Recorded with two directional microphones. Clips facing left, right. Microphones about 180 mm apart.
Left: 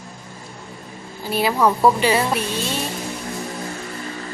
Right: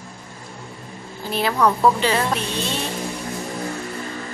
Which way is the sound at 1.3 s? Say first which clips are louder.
Left 1 dB; 5° left (ahead or behind).